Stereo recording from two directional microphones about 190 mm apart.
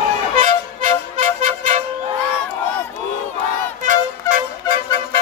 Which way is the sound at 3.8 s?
45° right (ahead or behind).